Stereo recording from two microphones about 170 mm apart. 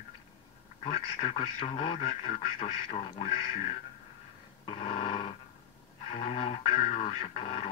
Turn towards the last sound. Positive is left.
turn(degrees=40)  # may be behind; listen again after turning